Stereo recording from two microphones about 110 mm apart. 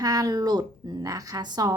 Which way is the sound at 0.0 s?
35° right (ahead or behind).